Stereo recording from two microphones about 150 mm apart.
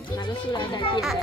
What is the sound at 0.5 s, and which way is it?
Speech, 30° left (ahead or behind).